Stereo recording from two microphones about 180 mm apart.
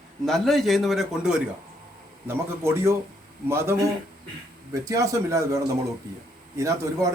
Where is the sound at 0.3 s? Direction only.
Centre (ahead or behind).